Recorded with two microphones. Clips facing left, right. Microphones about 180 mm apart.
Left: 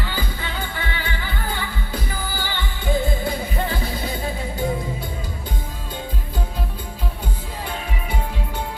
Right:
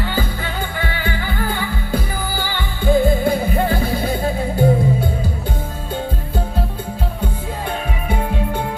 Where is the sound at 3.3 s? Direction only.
55° right (ahead or behind).